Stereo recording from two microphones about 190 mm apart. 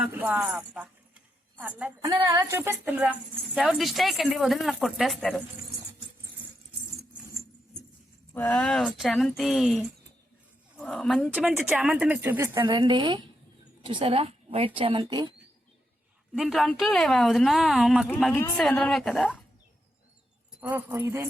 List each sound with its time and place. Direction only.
0.0 s speech: 10° right (ahead or behind)
2.0 s speech: 20° right (ahead or behind); by 5.4 s centre (ahead or behind)
8.3 s speech: 10° left (ahead or behind)
10.8 s a woman's voice: 5° left (ahead or behind); by 15.3 s 25° right (ahead or behind)
16.3 s speech: centre (ahead or behind)
18.3 s speech: 10° left (ahead or behind)
20.6 s speech: 10° right (ahead or behind)